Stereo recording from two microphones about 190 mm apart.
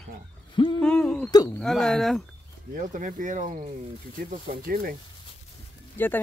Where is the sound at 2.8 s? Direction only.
45° right (ahead or behind).